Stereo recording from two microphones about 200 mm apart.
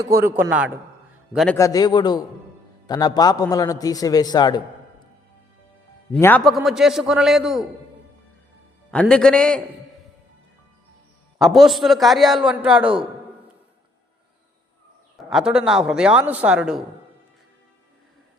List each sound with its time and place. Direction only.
0.2 s a man's voice: 10° right (ahead or behind)
1.5 s a man's voice: 15° left (ahead or behind)
6.1 s a man's voice: 10° left (ahead or behind)
8.9 s a man's voice: 5° left (ahead or behind)
11.3 s a man's voice: centre (ahead or behind)
15.3 s a man's voice: 5° right (ahead or behind)